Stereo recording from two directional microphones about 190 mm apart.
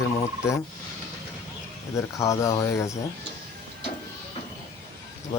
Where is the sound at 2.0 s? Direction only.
15° left (ahead or behind).